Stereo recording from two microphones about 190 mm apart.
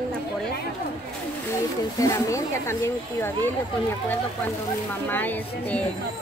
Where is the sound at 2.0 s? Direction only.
15° left (ahead or behind).